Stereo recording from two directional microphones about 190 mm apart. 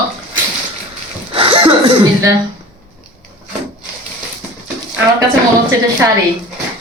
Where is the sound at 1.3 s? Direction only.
30° right (ahead or behind).